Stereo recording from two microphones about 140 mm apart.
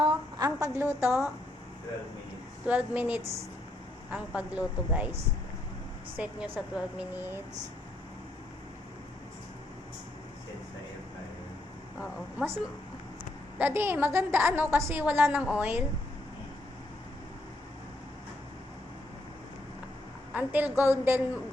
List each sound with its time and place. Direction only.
0.0 s a sound: 30° right (ahead or behind)
2.6 s a woman's voice: 10° right (ahead or behind)
6.1 s a woman's voice: 10° right (ahead or behind)
11.9 s a woman's voice: 10° right (ahead or behind)
13.6 s a woman's voice: 15° right (ahead or behind)
20.3 s a woman's voice: 10° right (ahead or behind)